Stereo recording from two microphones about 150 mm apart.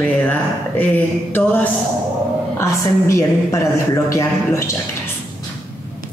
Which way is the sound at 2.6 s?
20° left (ahead or behind).